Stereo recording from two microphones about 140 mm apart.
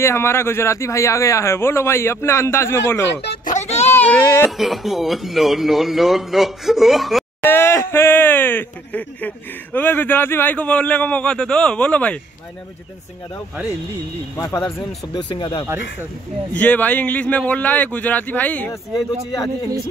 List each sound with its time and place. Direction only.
0.0 s a man's voice: 20° left (ahead or behind)
3.4 s a sound: 55° left (ahead or behind)
3.9 s speech: 15° left (ahead or behind)
4.5 s a man's voice: centre (ahead or behind)
7.4 s speech: 15° left (ahead or behind)
14.3 s a man's voice: 20° left (ahead or behind)
15.1 s speech: 35° left (ahead or behind)
16.5 s speech: 10° left (ahead or behind)